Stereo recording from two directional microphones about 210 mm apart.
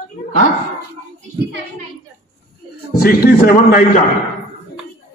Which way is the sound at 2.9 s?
45° left (ahead or behind).